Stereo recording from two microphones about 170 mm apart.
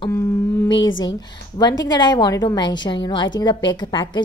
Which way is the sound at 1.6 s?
25° left (ahead or behind).